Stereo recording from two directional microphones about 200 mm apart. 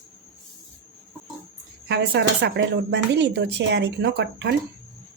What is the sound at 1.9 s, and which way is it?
Speech, 60° right (ahead or behind).